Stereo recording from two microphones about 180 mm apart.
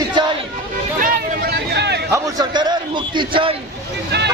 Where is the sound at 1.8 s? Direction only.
70° right (ahead or behind).